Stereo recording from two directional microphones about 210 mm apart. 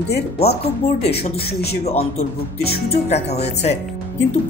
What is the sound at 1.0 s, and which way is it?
Speech, 30° left (ahead or behind).